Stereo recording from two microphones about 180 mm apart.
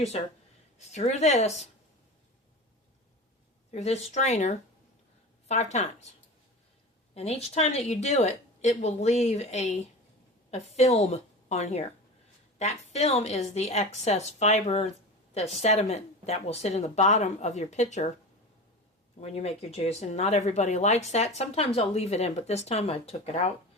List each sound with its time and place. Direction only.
0.1 s speech: 35° left (ahead or behind)
3.7 s speech: 35° left (ahead or behind)
7.1 s speech: 35° left (ahead or behind)
19.2 s speech: 35° left (ahead or behind)